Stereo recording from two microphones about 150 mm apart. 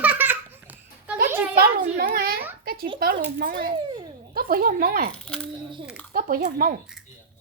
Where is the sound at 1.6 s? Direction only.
85° right.